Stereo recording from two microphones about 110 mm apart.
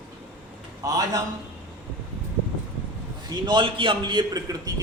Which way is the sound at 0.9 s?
35° right (ahead or behind).